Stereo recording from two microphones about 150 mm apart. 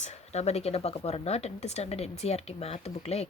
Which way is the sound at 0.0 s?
45° left (ahead or behind).